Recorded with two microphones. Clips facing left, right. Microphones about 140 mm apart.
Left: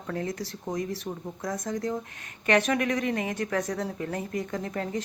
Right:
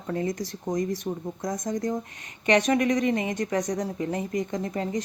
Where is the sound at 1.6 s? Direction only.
15° right (ahead or behind).